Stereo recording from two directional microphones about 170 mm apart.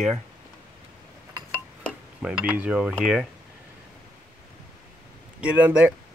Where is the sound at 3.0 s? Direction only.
5° right (ahead or behind).